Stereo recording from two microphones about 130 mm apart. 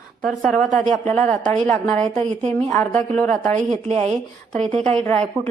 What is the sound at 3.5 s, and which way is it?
Speech, 60° right (ahead or behind).